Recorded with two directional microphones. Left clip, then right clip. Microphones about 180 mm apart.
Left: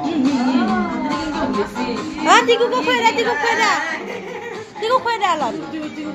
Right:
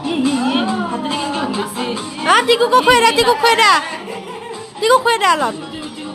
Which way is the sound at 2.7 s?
45° right (ahead or behind).